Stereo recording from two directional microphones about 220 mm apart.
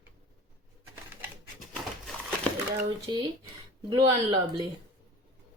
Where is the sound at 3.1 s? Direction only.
20° right (ahead or behind).